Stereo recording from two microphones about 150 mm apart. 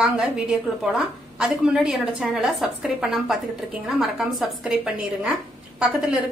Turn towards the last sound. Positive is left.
turn(degrees=-5)  # may be behind; listen again after turning